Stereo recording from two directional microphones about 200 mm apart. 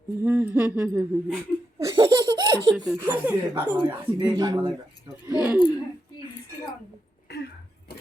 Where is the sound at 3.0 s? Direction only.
10° right (ahead or behind).